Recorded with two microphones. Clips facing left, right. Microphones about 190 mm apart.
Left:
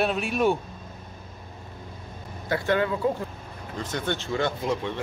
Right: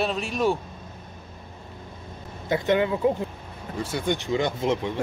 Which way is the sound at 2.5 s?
20° right (ahead or behind).